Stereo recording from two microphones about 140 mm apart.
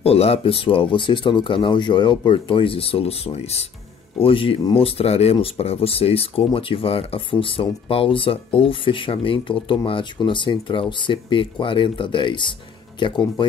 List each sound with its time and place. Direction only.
0.0 s speech: 45° left (ahead or behind)